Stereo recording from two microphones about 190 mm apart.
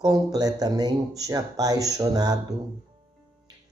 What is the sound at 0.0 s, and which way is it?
Speech, 20° right (ahead or behind).